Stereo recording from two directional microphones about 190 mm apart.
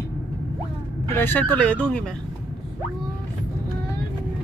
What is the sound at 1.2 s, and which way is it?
Speech, 10° left (ahead or behind).